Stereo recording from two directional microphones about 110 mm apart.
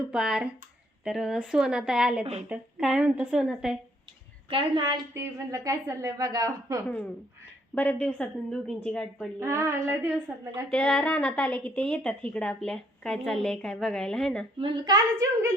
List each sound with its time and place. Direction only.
0.1 s a woman's voice: 5° right (ahead or behind)
4.4 s a woman's voice: 50° right (ahead or behind)
5.1 s a woman's voice: 25° right (ahead or behind)
6.8 s speech: 15° left (ahead or behind)
9.4 s a sound: 25° right (ahead or behind)
10.3 s a woman's voice: 15° right (ahead or behind)
10.7 s speech: 5° left (ahead or behind)
14.6 s a woman's voice: 40° right (ahead or behind)